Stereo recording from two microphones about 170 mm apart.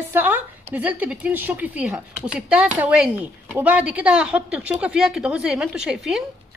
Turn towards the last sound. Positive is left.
turn(degrees=-5)  # may be behind; listen again after turning